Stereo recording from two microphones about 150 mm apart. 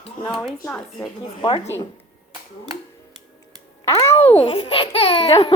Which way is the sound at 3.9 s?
40° left (ahead or behind).